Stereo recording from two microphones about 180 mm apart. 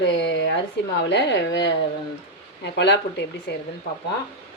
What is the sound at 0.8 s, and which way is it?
A woman's voice, 75° left (ahead or behind).